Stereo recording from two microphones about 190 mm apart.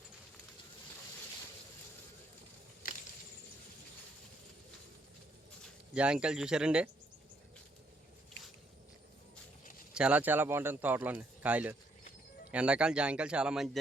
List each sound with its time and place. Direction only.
2.8 s a sound: 50° left (ahead or behind)
5.9 s speech: 5° right (ahead or behind)
9.9 s a man's voice: 5° right (ahead or behind)